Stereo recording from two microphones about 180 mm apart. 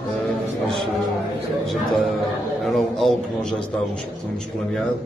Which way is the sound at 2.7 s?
Centre (ahead or behind).